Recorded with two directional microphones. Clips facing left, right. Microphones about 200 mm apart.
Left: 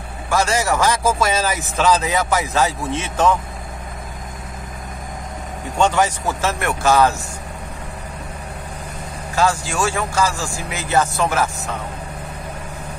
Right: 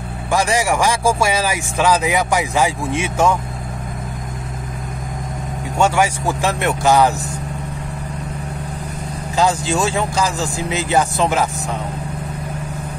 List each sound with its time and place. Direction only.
0.3 s speech: 15° right (ahead or behind)
5.8 s speech: 10° right (ahead or behind)
9.3 s speech: 20° right (ahead or behind)